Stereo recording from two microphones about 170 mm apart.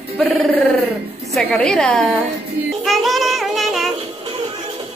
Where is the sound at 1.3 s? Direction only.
5° left (ahead or behind).